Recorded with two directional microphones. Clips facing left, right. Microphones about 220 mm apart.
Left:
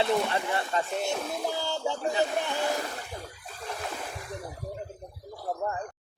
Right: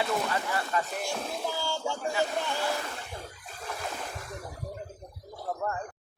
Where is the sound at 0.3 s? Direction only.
25° left (ahead or behind).